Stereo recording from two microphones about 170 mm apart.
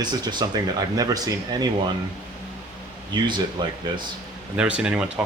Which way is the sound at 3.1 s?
25° right (ahead or behind).